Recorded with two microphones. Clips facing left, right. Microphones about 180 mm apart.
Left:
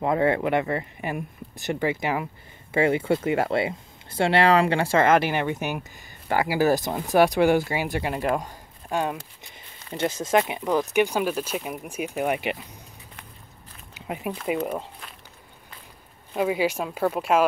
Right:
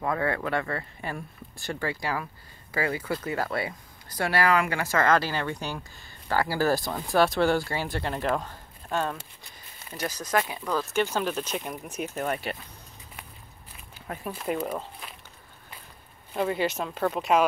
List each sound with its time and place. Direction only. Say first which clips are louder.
0.0 s speech: left 6 dB; 20° left (ahead or behind)
9.8 s speech: left 6 dB; 25° left (ahead or behind)
13.9 s a sound: left 5 dB; 20° left (ahead or behind)
14.3 s speech: left 2 dB; centre (ahead or behind)
16.3 s speech: left 3 dB; 10° left (ahead or behind)